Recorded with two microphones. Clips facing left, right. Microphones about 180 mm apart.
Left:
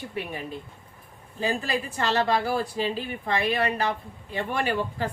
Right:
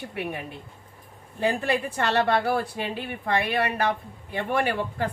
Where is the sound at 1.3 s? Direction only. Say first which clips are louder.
Right 3 dB; 65° right (ahead or behind).